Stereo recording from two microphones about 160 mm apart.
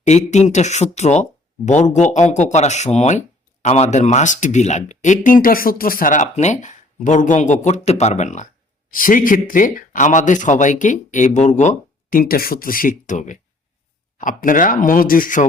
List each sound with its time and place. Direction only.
0.0 s speech: 45° left (ahead or behind)
8.9 s speech: 60° left (ahead or behind)
12.1 s speech: 65° left (ahead or behind)